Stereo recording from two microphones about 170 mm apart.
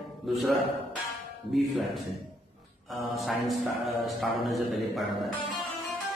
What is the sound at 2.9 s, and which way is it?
Speech, centre (ahead or behind).